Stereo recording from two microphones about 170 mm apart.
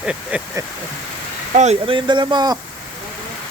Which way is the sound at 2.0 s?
25° right (ahead or behind).